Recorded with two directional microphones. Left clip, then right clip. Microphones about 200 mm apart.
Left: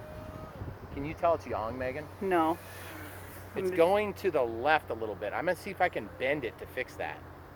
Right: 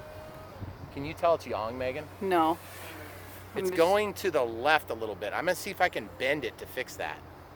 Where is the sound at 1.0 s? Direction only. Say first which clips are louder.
Right 2 dB; 50° right (ahead or behind).